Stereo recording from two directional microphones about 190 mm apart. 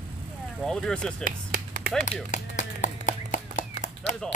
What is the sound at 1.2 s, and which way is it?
Finger snapping, 50° right (ahead or behind).